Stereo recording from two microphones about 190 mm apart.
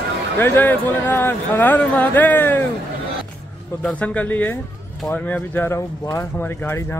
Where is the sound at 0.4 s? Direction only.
10° left (ahead or behind).